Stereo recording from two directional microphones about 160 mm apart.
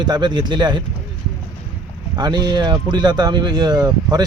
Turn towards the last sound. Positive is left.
turn(degrees=-25)  # may be behind; listen again after turning